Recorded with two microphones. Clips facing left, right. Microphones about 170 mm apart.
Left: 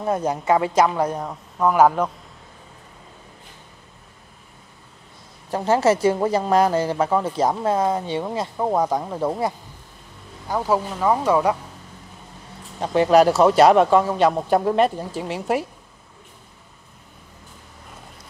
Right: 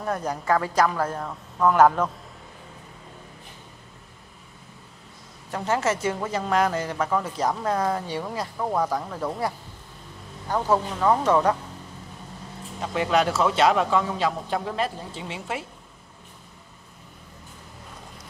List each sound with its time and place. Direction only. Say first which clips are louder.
0.0 s speech: left 5 dB; 25° left (ahead or behind); by 2.0 s 5° left (ahead or behind)
5.5 s speech: left 7 dB; 35° left (ahead or behind)
10.5 s speech: left 1 dB; 10° left (ahead or behind)
12.8 s speech: left 8 dB; 35° left (ahead or behind)